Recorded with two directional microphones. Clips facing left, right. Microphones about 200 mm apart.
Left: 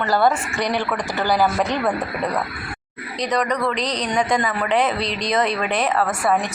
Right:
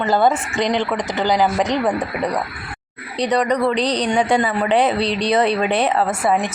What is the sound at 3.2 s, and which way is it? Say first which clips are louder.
A woman's voice: right 4 dB; 30° right (ahead or behind).